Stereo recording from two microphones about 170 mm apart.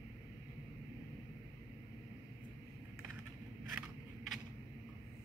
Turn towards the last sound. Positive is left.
turn(degrees=0)  # may be behind; listen again after turning